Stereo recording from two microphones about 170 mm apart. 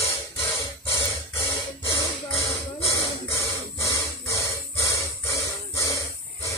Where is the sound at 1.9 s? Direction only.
30° left (ahead or behind).